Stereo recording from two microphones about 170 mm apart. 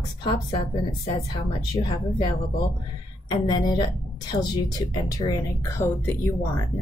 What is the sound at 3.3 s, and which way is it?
A woman's voice, 25° left (ahead or behind).